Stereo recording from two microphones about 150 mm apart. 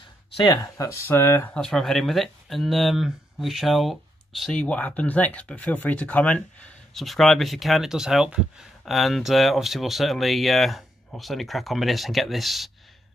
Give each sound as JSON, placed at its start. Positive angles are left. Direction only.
{"t": 0.4, "sound": "speech", "side_deg": 25}
{"t": 1.5, "sound": "speech", "side_deg": 5}